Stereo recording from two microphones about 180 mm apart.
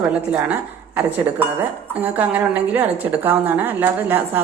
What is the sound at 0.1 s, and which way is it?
Speech, 5° right (ahead or behind).